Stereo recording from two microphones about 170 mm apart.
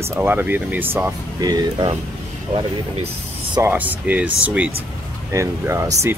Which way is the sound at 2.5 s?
35° right (ahead or behind).